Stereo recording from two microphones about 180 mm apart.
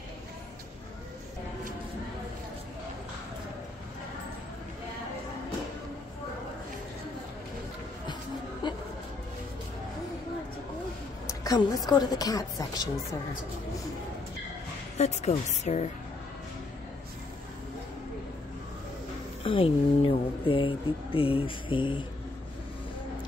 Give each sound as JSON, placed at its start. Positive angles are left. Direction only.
{"t": 8.6, "sound": "music", "side_deg": 25}
{"t": 11.4, "sound": "speech", "side_deg": 20}
{"t": 15.0, "sound": "speech", "side_deg": 40}
{"t": 19.4, "sound": "speech", "side_deg": 30}